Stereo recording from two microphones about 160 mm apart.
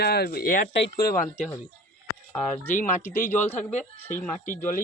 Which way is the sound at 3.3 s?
10° left (ahead or behind).